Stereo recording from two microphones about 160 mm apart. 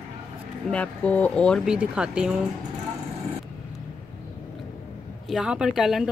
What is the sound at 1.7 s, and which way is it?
Speech, 5° right (ahead or behind).